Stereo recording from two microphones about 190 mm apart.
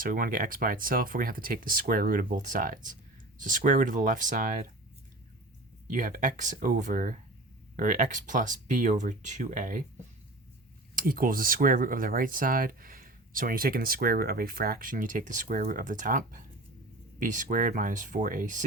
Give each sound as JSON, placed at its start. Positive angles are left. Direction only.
{"t": 0.0, "sound": "speech", "side_deg": -45}
{"t": 5.9, "sound": "speech", "side_deg": -45}
{"t": 10.9, "sound": "speech", "side_deg": -50}